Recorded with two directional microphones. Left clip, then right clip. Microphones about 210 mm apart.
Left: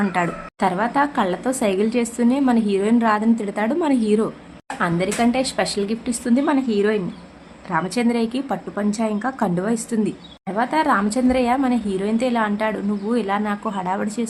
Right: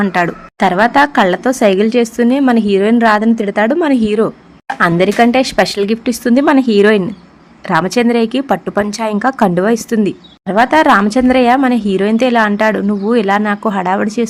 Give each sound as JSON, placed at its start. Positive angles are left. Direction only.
{"t": 0.0, "sound": "a woman's voice", "side_deg": -35}